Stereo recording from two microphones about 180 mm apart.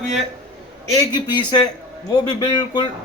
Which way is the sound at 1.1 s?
25° left (ahead or behind).